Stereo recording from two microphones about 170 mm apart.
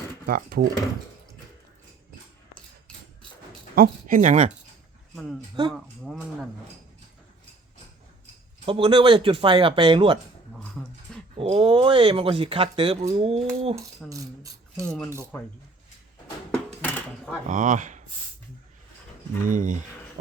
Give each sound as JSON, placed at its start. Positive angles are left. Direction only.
{"t": 0.3, "sound": "speech", "side_deg": -60}
{"t": 3.8, "sound": "speech", "side_deg": -50}
{"t": 5.1, "sound": "speech", "side_deg": 0}
{"t": 8.6, "sound": "speech", "side_deg": -30}
{"t": 10.5, "sound": "dog", "side_deg": 5}
{"t": 11.3, "sound": "speech", "side_deg": -35}
{"t": 14.1, "sound": "mechanisms", "side_deg": -20}
{"t": 14.8, "sound": "speech", "side_deg": 5}
{"t": 16.5, "sound": "dishes", "side_deg": 5}
{"t": 17.5, "sound": "speech", "side_deg": -50}
{"t": 19.4, "sound": "speech", "side_deg": -50}